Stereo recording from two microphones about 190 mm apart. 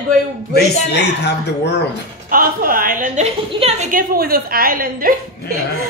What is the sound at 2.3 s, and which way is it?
A woman's voice, 50° right (ahead or behind).